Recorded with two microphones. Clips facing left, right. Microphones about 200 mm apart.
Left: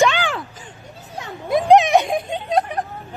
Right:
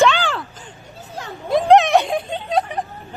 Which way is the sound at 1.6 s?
Centre (ahead or behind).